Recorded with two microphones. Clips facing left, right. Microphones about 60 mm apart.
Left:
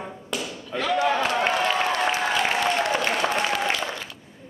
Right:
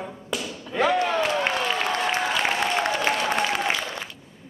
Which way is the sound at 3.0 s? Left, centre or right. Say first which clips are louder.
Even; centre.